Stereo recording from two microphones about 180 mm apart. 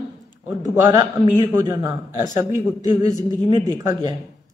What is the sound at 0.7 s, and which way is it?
A man's voice, 20° right (ahead or behind).